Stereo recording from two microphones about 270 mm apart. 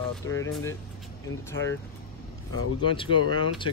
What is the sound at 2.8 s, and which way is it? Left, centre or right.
Speech, centre.